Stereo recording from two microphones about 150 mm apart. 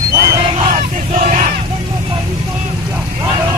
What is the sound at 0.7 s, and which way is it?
Battle cry, 50° right (ahead or behind).